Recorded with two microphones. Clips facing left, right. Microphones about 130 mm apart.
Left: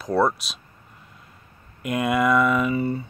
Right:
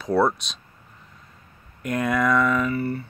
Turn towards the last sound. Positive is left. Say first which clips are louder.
# left 1 dB
turn(degrees=20)  # may be behind; listen again after turning